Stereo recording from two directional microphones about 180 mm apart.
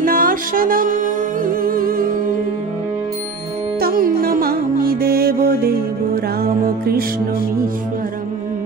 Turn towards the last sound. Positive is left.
turn(degrees=-55)  # may be behind; listen again after turning